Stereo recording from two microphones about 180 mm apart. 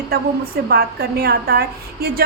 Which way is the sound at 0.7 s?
60° right (ahead or behind).